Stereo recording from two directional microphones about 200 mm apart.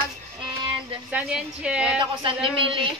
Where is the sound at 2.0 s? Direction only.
25° right (ahead or behind).